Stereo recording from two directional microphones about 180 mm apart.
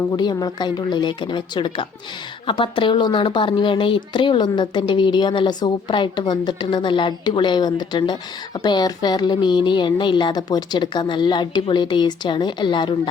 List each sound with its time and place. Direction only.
0.1 s speech: 20° left (ahead or behind)